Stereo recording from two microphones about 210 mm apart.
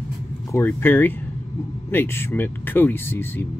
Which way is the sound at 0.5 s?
10° left (ahead or behind).